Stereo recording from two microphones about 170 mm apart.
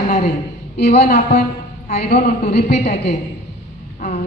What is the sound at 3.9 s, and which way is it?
Vehicle, 50° left (ahead or behind).